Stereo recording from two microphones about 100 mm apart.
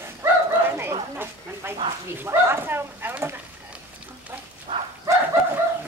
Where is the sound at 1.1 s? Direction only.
25° right (ahead or behind).